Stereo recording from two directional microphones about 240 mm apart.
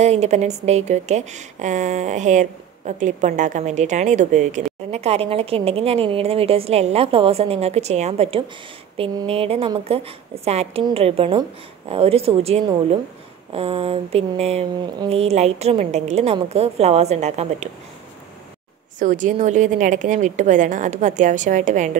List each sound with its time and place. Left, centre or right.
0.0 s a woman's voice: right
18.9 s a woman's voice: right